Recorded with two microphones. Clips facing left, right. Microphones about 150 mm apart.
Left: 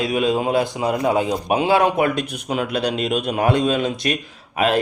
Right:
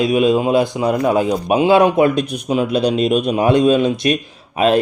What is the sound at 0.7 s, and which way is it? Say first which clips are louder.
Speech: right 4 dB; 20° left (ahead or behind).